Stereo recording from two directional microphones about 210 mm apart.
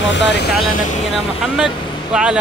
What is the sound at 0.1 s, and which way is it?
Speech, 55° left (ahead or behind).